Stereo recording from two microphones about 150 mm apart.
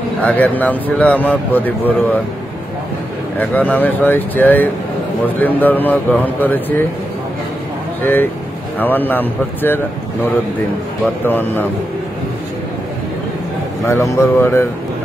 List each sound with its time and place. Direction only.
0.2 s speech: 10° left (ahead or behind)
3.3 s speech: 10° left (ahead or behind)
8.0 s speech: 15° left (ahead or behind)
11.2 s speech: 15° left (ahead or behind)
13.8 s speech: 15° left (ahead or behind)